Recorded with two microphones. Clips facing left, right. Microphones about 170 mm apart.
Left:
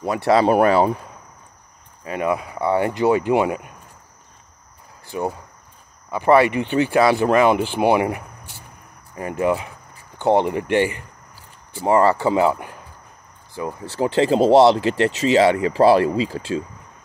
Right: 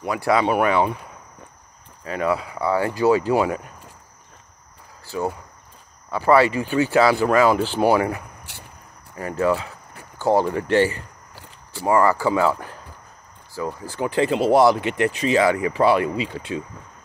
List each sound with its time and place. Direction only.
0.0 s speech: 30° left (ahead or behind)
2.0 s speech: 15° left (ahead or behind)
5.0 s speech: 20° left (ahead or behind)
11.8 s speech: 25° left (ahead or behind)
13.9 s speech: 30° left (ahead or behind)